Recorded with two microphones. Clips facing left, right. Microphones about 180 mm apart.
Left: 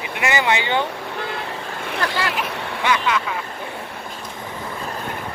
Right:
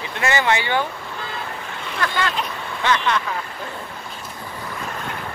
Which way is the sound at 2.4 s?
10° left (ahead or behind).